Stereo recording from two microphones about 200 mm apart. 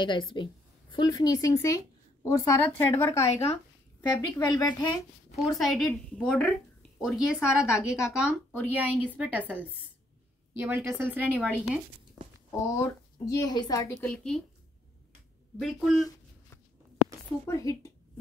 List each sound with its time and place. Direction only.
0.0 s a woman's voice: 25° left (ahead or behind)
5.5 s a woman's voice: centre (ahead or behind)
10.6 s speech: 10° right (ahead or behind)
12.4 s speech: 15° left (ahead or behind)
14.0 s a woman's voice: 5° left (ahead or behind)
15.6 s a woman's voice: centre (ahead or behind)
17.5 s a woman's voice: 15° left (ahead or behind)